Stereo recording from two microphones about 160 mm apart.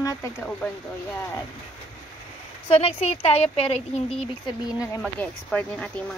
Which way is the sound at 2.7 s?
40° left (ahead or behind).